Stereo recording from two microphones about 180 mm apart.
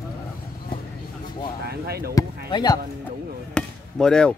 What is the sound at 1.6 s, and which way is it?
Basketball bounce, 60° right (ahead or behind).